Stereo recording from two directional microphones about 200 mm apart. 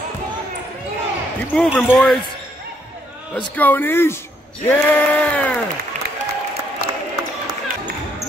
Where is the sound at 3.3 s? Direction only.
10° left (ahead or behind).